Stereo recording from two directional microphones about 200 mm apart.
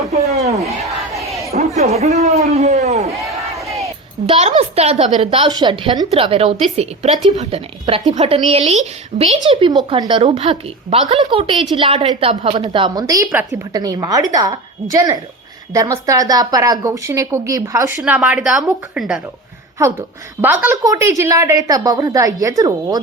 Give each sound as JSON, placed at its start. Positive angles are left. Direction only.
{"t": 0.3, "sound": "a man's voice", "side_deg": -30}
{"t": 1.1, "sound": "crowd", "side_deg": 0}
{"t": 1.5, "sound": "a sound", "side_deg": -35}
{"t": 3.6, "sound": "crowd", "side_deg": 0}
{"t": 4.3, "sound": "a woman's voice", "side_deg": -30}